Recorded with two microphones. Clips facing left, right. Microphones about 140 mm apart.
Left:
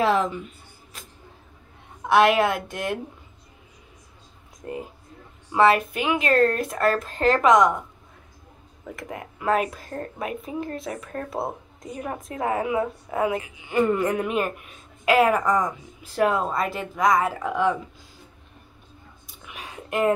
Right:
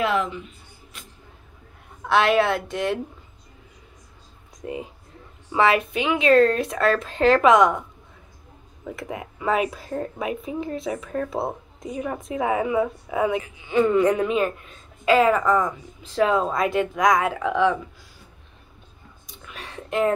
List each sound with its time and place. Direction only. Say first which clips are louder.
0.0 s speech: left 2 dB; 35° left (ahead or behind)
0.9 s music: left 1 dB; 35° left (ahead or behind)
2.0 s a woman's voice: left 1 dB; 10° left (ahead or behind)
4.6 s a woman's voice: right 1 dB; centre (ahead or behind)
9.4 s a woman's voice: even; centre (ahead or behind)
16.2 s a woman's voice: right 2 dB; centre (ahead or behind)
19.2 s whispering: right 1 dB; 10° left (ahead or behind)